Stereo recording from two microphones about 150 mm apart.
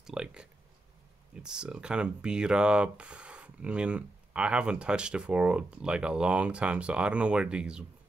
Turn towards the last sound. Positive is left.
turn(degrees=-5)  # may be behind; listen again after turning